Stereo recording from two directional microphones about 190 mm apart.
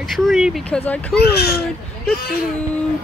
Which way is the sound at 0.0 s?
Centre (ahead or behind).